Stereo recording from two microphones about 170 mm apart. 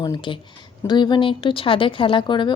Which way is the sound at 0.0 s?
25° left (ahead or behind).